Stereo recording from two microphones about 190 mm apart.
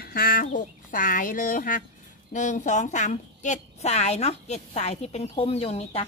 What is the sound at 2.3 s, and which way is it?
Speech, 40° left (ahead or behind).